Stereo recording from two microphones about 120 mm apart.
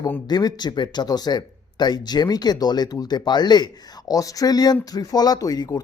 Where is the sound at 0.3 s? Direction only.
35° left (ahead or behind).